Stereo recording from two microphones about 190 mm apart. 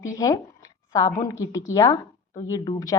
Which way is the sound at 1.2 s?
15° left (ahead or behind).